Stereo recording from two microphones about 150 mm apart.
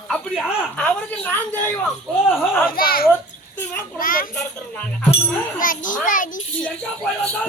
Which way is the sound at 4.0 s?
70° left (ahead or behind).